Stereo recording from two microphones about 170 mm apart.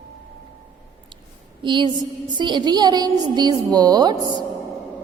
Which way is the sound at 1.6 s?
25° right (ahead or behind).